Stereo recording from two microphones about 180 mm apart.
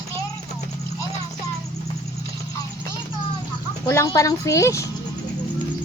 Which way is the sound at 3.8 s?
15° left (ahead or behind).